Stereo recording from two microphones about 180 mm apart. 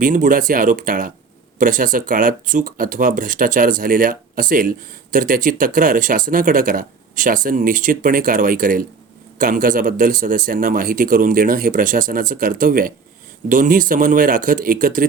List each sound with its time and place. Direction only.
0.0 s speech: 50° right (ahead or behind)